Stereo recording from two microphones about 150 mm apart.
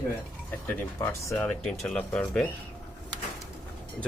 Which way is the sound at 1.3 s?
10° left (ahead or behind).